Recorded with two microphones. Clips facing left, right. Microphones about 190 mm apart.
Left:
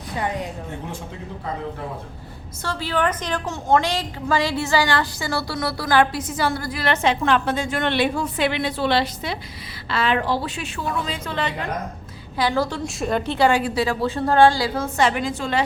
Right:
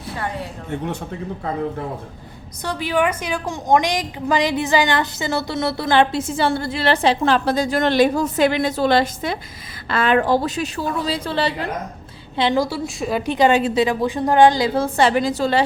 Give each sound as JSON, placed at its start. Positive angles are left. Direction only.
{"t": 2.6, "sound": "a woman's voice", "side_deg": -15}
{"t": 12.4, "sound": "a woman's voice", "side_deg": -20}
{"t": 12.6, "sound": "a woman's voice", "side_deg": -5}
{"t": 13.3, "sound": "a woman's voice", "side_deg": -20}
{"t": 14.8, "sound": "a woman's voice", "side_deg": -30}